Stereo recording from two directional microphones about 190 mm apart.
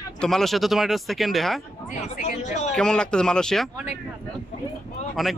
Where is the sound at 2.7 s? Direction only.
5° left (ahead or behind).